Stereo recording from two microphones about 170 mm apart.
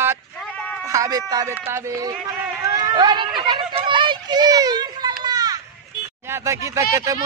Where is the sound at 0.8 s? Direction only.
20° right (ahead or behind).